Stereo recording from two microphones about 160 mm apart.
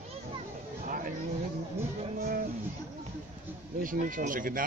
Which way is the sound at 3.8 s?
55° right (ahead or behind).